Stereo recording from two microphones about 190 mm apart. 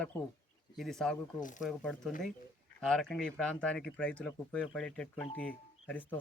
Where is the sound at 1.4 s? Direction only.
45° left (ahead or behind).